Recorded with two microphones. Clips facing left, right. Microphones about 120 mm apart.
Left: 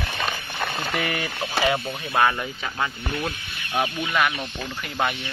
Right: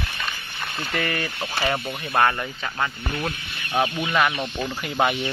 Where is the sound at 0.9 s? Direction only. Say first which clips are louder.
Right 3 dB; 10° left (ahead or behind).